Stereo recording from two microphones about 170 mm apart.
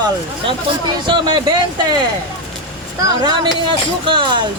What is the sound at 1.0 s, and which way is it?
Speech, 30° right (ahead or behind).